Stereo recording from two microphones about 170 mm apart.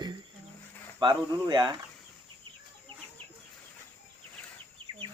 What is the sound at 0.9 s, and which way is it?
Speech, 25° right (ahead or behind).